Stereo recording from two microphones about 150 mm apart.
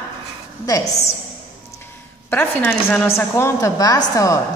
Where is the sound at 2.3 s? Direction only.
15° left (ahead or behind).